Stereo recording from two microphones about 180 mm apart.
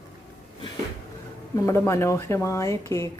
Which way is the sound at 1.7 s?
15° left (ahead or behind).